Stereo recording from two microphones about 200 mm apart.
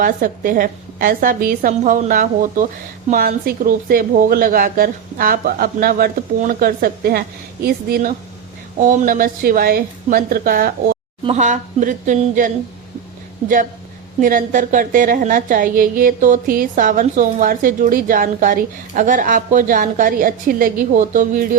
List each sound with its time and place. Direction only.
0.0 s a woman's voice: 45° right (ahead or behind)
11.2 s a woman's voice: 35° right (ahead or behind)
14.2 s a woman's voice: 40° right (ahead or behind)